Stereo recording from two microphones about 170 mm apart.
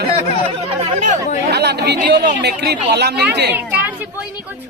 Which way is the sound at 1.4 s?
80° right.